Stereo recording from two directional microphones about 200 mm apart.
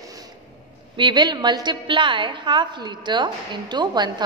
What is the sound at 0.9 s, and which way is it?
A woman's voice, 25° right (ahead or behind).